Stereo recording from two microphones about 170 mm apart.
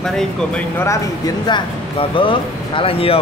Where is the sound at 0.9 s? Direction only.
25° left (ahead or behind).